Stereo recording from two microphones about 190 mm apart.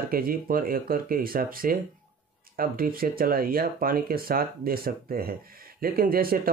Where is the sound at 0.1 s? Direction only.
50° right (ahead or behind).